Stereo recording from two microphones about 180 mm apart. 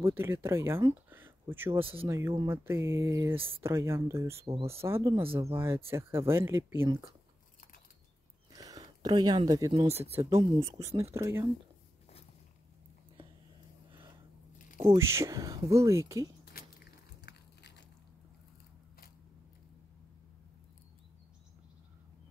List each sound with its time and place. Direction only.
0.0 s speech: 15° right (ahead or behind)
1.8 s speech: 30° right (ahead or behind)
2.0 s speech: 15° right (ahead or behind)
4.5 s speech: 35° right (ahead or behind)
4.8 s speech: 15° right (ahead or behind)
8.5 s a sound: 20° right (ahead or behind)
10.3 s speech: 15° right (ahead or behind)
14.9 s speech: 15° right (ahead or behind)
16.5 s crushing: 65° left (ahead or behind)